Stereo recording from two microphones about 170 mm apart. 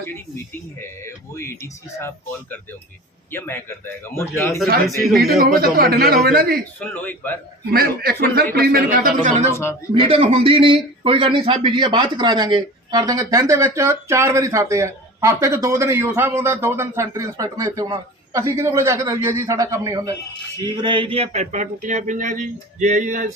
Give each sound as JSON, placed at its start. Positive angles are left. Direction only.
{"t": 0.0, "sound": "speech", "side_deg": 15}
{"t": 5.4, "sound": "a man's voice", "side_deg": -60}
{"t": 6.7, "sound": "speech", "side_deg": 10}
{"t": 7.7, "sound": "a man's voice", "side_deg": -65}
{"t": 9.5, "sound": "speech", "side_deg": 15}
{"t": 9.9, "sound": "a man's voice", "side_deg": -35}